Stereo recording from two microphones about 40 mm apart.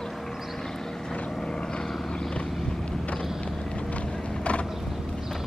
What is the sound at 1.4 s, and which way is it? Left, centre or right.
Vehicle, centre.